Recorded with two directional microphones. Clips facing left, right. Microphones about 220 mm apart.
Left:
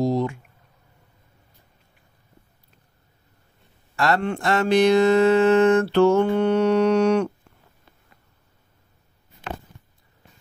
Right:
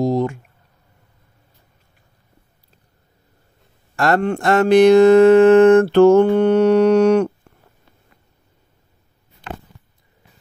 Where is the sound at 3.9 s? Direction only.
50° right (ahead or behind).